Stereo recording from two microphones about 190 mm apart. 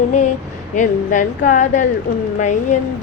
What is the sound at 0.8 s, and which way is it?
Speech, 40° left (ahead or behind).